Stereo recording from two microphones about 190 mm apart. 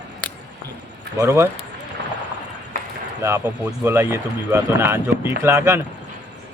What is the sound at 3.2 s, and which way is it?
Speech, 15° right (ahead or behind).